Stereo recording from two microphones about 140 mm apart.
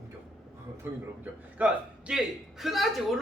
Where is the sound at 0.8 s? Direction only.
15° right (ahead or behind).